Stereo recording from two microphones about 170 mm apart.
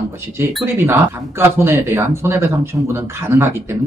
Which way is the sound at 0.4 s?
15° right (ahead or behind).